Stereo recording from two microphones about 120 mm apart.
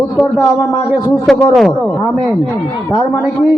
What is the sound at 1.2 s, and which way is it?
Speech, centre (ahead or behind).